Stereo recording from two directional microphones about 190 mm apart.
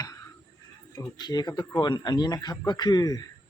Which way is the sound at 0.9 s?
20° left (ahead or behind).